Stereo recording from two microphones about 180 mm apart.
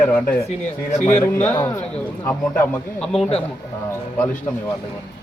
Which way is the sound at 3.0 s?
5° left (ahead or behind).